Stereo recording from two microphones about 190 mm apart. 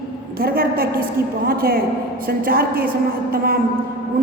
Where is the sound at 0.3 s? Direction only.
50° right (ahead or behind).